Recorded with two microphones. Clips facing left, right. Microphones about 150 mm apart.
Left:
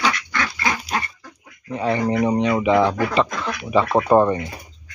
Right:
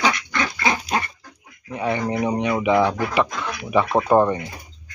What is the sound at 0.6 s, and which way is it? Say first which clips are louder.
Pig: right 3 dB; 20° right (ahead or behind).